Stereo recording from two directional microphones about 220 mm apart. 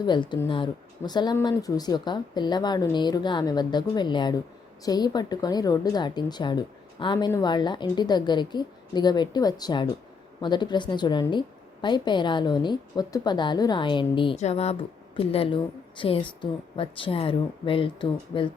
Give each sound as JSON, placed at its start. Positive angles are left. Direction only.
{"t": 0.0, "sound": "a woman's voice", "side_deg": 20}